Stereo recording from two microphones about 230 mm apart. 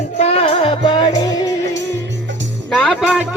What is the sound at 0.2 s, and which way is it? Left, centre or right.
Music, left.